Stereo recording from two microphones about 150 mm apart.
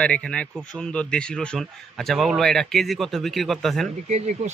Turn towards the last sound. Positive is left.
turn(degrees=-50)  # may be behind; listen again after turning